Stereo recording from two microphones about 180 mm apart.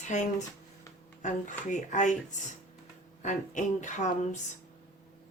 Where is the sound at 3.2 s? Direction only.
45° left (ahead or behind).